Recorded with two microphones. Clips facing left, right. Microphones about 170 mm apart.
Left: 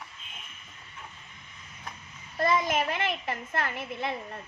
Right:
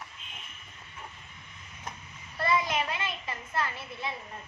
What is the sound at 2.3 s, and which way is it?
A child's voice, 45° left (ahead or behind).